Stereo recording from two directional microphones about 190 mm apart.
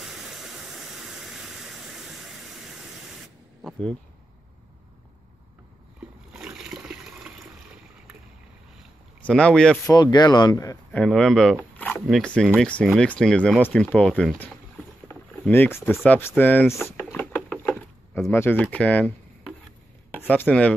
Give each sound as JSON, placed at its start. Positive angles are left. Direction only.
{"t": 0.0, "sound": "a sound", "side_deg": 0}
{"t": 6.3, "sound": "toilet flush", "side_deg": -5}
{"t": 9.2, "sound": "speech", "side_deg": 5}
{"t": 9.8, "sound": "speech", "side_deg": 20}
{"t": 11.0, "sound": "speech", "side_deg": 5}
{"t": 15.0, "sound": "rowboat", "side_deg": 10}
{"t": 15.9, "sound": "speech", "side_deg": 0}
{"t": 16.2, "sound": "speech", "side_deg": 10}
{"t": 16.8, "sound": "drawer open or close", "side_deg": 0}
{"t": 17.4, "sound": "a sound", "side_deg": 0}
{"t": 20.2, "sound": "speech", "side_deg": 10}